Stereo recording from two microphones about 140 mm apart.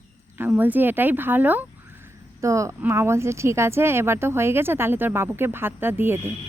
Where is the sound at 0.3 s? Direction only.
15° right (ahead or behind).